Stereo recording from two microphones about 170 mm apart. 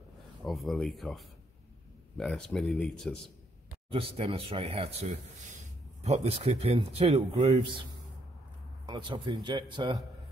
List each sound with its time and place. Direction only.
0.4 s speech: centre (ahead or behind)
3.9 s speech: 35° right (ahead or behind)
8.8 s speech: 25° right (ahead or behind)